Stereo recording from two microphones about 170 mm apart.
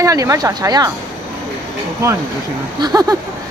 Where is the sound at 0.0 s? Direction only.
20° right (ahead or behind).